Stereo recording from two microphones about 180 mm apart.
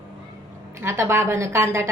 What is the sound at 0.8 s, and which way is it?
A woman's voice, 15° right (ahead or behind).